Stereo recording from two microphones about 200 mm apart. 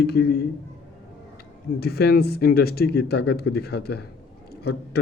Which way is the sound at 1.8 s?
55° left (ahead or behind).